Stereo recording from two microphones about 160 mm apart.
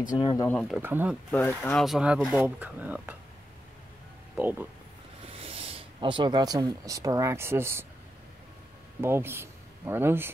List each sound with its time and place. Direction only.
0.2 s speech: 25° left (ahead or behind)
0.5 s speech: 5° left (ahead or behind)
0.7 s speech: 10° right (ahead or behind)
1.3 s speech: 10° left (ahead or behind); by 3.2 s 10° right (ahead or behind)
4.4 s speech: 10° right (ahead or behind)
5.2 s speech: 35° right (ahead or behind); by 7.8 s 15° right (ahead or behind)
9.0 s speech: 15° right (ahead or behind)